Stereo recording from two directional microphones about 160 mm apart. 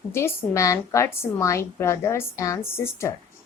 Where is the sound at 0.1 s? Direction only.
15° left (ahead or behind).